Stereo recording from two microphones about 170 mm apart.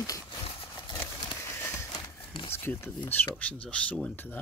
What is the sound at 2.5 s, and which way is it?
Speech, 15° left (ahead or behind).